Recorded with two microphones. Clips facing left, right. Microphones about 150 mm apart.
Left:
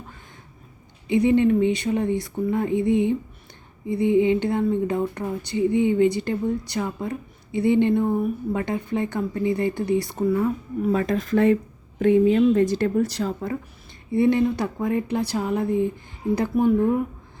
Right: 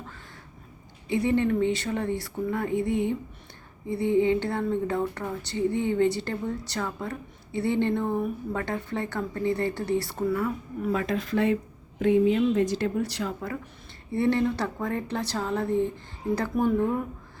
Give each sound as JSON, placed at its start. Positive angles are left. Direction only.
{"t": 1.0, "sound": "speech", "side_deg": 15}
{"t": 10.9, "sound": "speech", "side_deg": 40}
{"t": 14.1, "sound": "speech", "side_deg": 15}